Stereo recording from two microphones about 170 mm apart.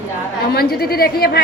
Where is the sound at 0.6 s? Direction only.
65° left (ahead or behind).